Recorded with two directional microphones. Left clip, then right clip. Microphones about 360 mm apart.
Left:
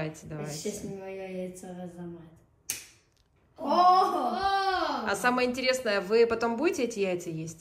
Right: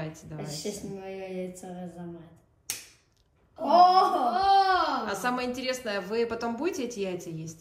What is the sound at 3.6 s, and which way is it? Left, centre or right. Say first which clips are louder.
A woman's voice: right 3 dB; centre.